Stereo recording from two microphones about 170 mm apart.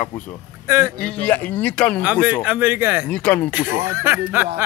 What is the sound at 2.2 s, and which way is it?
Speech, 10° right (ahead or behind).